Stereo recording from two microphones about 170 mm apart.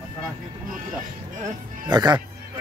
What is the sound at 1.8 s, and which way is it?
Speech, 25° right (ahead or behind).